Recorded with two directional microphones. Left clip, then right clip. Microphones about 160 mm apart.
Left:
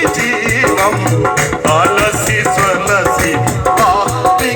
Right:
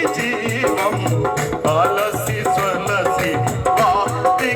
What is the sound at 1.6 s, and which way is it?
Music, 80° right.